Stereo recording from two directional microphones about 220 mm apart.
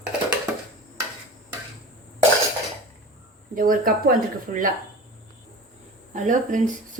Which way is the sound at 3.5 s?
40° right (ahead or behind).